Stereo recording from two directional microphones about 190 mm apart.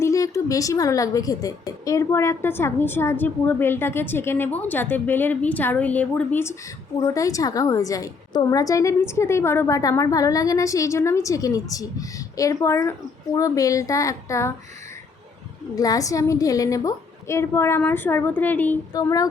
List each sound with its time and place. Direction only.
0.0 s a woman's voice: 15° left (ahead or behind)
15.7 s a woman's voice: 20° left (ahead or behind)